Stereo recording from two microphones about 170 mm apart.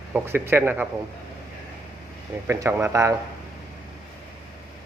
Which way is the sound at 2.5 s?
15° right (ahead or behind).